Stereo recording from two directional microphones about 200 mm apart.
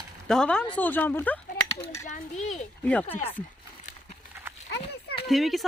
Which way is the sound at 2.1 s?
35° left (ahead or behind).